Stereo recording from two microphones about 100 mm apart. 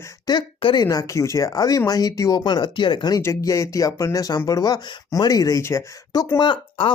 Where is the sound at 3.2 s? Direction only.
30° left (ahead or behind).